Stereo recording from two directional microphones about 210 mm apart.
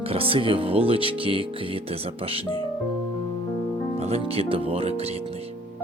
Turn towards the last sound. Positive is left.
turn(degrees=-30)  # may be behind; listen again after turning